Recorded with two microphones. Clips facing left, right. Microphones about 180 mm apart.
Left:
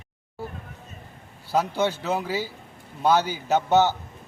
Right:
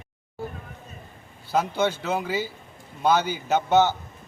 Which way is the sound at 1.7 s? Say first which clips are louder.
Even; 5° left (ahead or behind).